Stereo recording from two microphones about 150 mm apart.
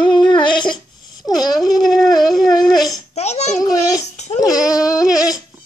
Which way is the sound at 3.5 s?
25° left (ahead or behind).